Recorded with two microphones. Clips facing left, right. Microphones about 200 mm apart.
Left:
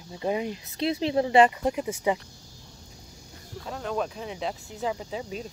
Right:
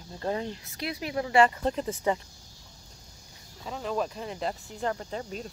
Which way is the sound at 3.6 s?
Centre (ahead or behind).